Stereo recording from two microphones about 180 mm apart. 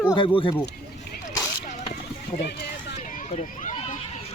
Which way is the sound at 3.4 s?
40° left (ahead or behind).